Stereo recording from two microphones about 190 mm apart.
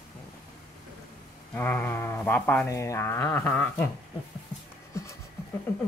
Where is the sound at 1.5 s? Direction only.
10° left (ahead or behind).